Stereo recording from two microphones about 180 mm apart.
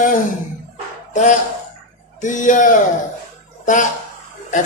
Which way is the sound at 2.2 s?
45° left (ahead or behind).